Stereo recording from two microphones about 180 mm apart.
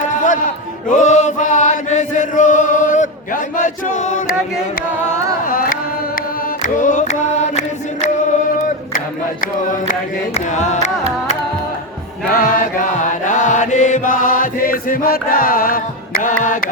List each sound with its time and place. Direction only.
0.9 s chant: 45° left (ahead or behind)
5.0 s carnatic music: 50° left (ahead or behind)
6.6 s music: 45° left (ahead or behind)
9.6 s music: 45° left (ahead or behind)
12.3 s chant: 50° left (ahead or behind)
16.4 s a sound: 45° left (ahead or behind)